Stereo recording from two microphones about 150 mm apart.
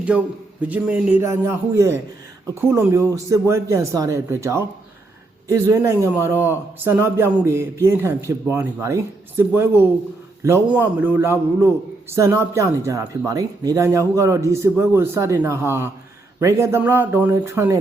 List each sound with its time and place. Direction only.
0.1 s a man's voice: 5° right (ahead or behind)